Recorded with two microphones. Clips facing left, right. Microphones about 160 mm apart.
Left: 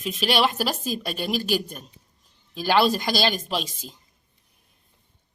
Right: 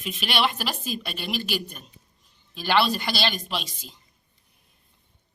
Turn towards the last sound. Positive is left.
turn(degrees=40)  # may be behind; listen again after turning